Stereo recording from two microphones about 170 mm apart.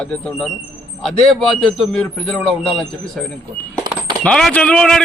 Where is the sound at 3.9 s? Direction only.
25° right (ahead or behind).